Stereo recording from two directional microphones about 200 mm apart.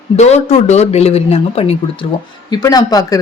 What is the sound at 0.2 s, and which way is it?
Speech, 35° left (ahead or behind).